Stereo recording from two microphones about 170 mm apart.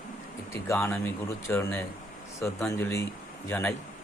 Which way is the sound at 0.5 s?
15° left (ahead or behind).